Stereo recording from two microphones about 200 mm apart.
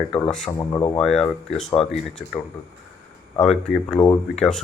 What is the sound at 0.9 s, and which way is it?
Speech, centre (ahead or behind).